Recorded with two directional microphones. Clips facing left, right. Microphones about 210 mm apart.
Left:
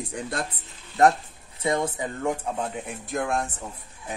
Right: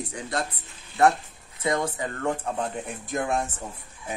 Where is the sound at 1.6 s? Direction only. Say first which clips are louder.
Left 1 dB; 25° left (ahead or behind).